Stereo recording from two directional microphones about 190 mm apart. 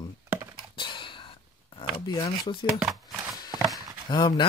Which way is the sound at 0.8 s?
25° left (ahead or behind).